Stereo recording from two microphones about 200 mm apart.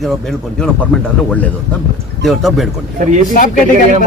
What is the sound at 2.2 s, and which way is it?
Speech, centre (ahead or behind).